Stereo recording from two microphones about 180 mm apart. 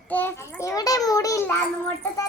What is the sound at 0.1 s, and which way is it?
Child singing, 10° left (ahead or behind).